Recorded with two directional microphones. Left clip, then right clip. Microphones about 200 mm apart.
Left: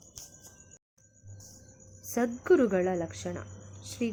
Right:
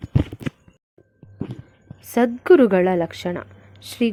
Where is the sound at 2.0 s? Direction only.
35° right (ahead or behind).